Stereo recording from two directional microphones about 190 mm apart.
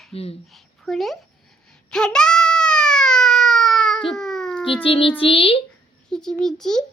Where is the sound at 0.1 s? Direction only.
30° left (ahead or behind).